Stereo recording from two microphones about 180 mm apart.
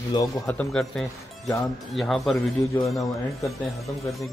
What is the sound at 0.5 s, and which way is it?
Speech, 5° left (ahead or behind).